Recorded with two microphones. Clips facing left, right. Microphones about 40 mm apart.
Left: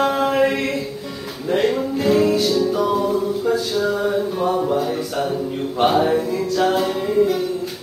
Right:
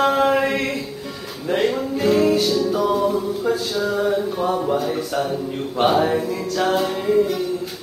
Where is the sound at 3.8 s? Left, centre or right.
Centre.